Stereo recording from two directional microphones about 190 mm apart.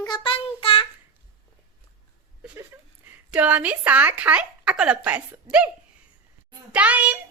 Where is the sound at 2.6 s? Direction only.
10° right (ahead or behind).